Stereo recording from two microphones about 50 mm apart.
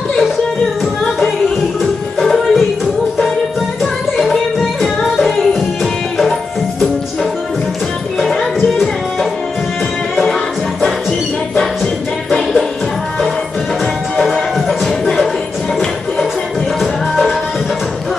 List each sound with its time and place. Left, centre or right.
2.1 s music: centre
5.2 s music: centre
8.6 s music: centre
11.5 s music: centre
14.2 s music: centre